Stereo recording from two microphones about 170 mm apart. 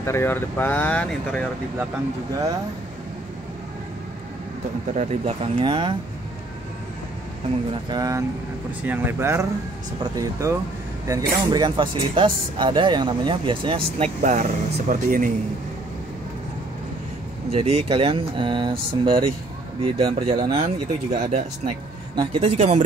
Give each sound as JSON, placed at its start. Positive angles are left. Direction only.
{"t": 0.0, "sound": "speech", "side_deg": 15}
{"t": 4.9, "sound": "speech", "side_deg": -40}
{"t": 7.9, "sound": "speech", "side_deg": -20}
{"t": 14.2, "sound": "speech", "side_deg": -45}
{"t": 17.5, "sound": "speech", "side_deg": -35}
{"t": 22.1, "sound": "speech", "side_deg": -30}